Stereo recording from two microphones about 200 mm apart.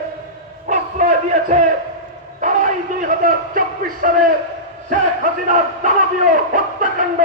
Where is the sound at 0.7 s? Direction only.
40° right (ahead or behind).